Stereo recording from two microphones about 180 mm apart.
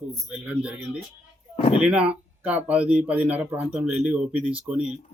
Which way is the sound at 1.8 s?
5° right (ahead or behind).